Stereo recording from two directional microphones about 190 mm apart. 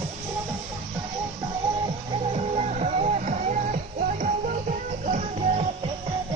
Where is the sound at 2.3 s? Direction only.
35° right (ahead or behind).